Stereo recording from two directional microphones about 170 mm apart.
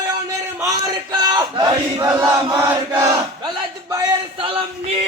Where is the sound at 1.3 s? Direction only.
25° right (ahead or behind).